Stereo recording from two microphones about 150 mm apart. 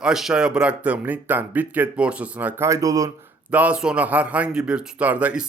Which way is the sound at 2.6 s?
20° right (ahead or behind).